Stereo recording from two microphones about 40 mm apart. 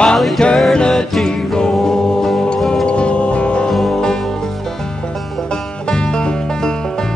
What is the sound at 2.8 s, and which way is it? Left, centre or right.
Music, left.